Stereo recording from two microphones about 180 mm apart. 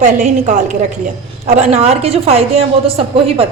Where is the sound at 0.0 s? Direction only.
45° right (ahead or behind).